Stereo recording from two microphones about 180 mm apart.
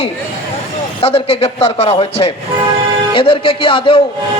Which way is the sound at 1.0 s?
35° left (ahead or behind).